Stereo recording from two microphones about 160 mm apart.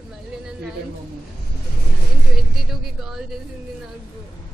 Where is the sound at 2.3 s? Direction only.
Centre (ahead or behind).